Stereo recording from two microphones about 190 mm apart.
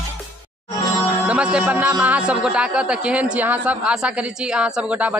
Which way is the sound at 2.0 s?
5° right (ahead or behind).